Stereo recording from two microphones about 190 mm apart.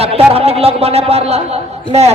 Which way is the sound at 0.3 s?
30° right (ahead or behind).